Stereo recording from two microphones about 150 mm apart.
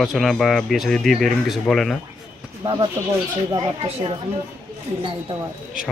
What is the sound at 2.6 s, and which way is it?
Speech, 25° right (ahead or behind).